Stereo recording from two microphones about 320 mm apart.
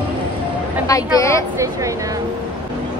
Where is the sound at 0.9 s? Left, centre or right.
Centre.